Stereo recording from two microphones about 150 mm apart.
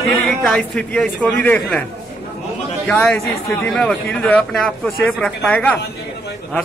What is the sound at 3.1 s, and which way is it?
Speech, 20° left (ahead or behind).